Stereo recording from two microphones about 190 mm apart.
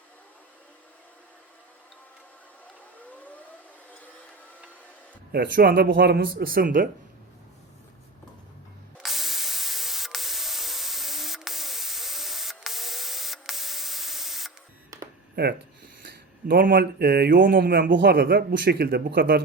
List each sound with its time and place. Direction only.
5.3 s speech: 55° right (ahead or behind)
9.0 s a sound: centre (ahead or behind)
16.0 s speech: 50° right (ahead or behind)